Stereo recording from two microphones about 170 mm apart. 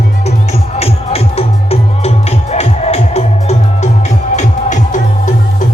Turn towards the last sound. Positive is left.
turn(degrees=45)  # may be behind; listen again after turning